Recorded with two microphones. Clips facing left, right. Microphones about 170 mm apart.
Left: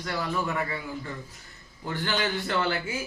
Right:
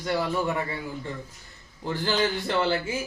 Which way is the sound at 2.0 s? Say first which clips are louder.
Right 3 dB; 30° right (ahead or behind).